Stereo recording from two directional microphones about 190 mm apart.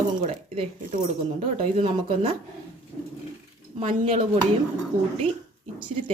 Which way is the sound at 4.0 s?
30° right (ahead or behind).